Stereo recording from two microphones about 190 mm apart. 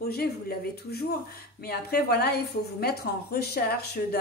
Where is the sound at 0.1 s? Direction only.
55° left (ahead or behind).